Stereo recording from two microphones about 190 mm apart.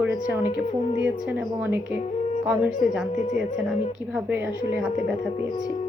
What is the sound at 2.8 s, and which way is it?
Speech, 45° left (ahead or behind).